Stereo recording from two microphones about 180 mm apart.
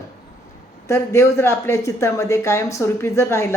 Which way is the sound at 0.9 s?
15° left (ahead or behind).